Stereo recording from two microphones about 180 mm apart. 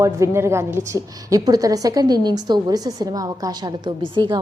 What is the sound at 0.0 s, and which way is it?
A woman's voice, 15° right (ahead or behind).